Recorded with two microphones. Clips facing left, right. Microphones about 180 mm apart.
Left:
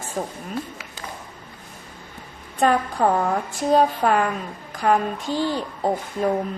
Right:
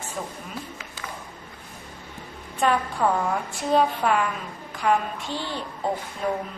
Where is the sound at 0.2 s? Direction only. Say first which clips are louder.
Left 6 dB; 50° left (ahead or behind).